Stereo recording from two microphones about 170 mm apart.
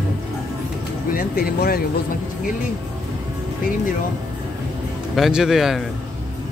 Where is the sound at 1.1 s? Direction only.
60° left (ahead or behind).